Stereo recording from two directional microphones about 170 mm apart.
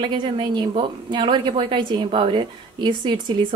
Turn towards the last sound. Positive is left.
turn(degrees=-25)  # may be behind; listen again after turning